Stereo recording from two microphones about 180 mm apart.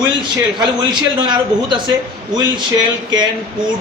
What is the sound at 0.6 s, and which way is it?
A man's voice, 25° right (ahead or behind).